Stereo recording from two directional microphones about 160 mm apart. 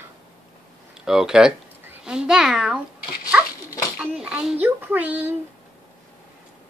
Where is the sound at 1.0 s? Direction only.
5° right (ahead or behind).